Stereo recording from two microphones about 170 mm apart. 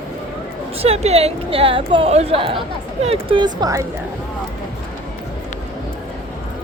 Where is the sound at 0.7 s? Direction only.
35° right (ahead or behind).